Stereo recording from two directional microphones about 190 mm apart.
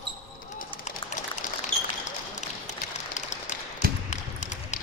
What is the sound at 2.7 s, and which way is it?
Tap, 40° left (ahead or behind).